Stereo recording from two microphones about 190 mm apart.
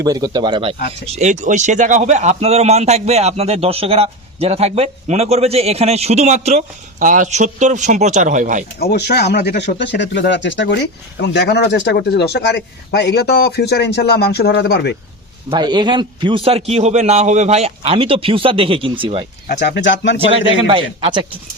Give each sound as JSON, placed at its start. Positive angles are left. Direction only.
{"t": 0.0, "sound": "a man's voice", "side_deg": -20}
{"t": 8.8, "sound": "speech", "side_deg": 60}
{"t": 15.4, "sound": "a man's voice", "side_deg": -25}
{"t": 19.6, "sound": "speech", "side_deg": 70}
{"t": 20.1, "sound": "a man's voice", "side_deg": -30}